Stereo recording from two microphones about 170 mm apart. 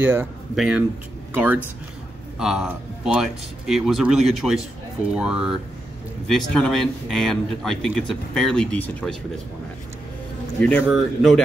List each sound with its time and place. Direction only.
0.0 s speech: 15° right (ahead or behind); by 9.1 s 10° left (ahead or behind)
10.6 s speech: 5° left (ahead or behind)